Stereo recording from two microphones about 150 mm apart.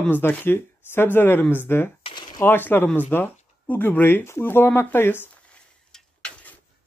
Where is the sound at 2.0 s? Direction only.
30° left (ahead or behind).